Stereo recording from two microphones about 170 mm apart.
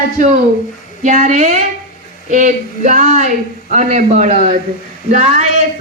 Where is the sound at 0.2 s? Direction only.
50° right (ahead or behind).